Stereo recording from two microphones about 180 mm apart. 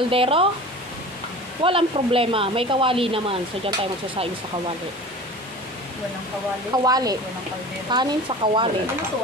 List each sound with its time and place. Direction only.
0.1 s speech: 30° right (ahead or behind)
1.6 s speech: 30° right (ahead or behind)
6.7 s speech: 20° right (ahead or behind)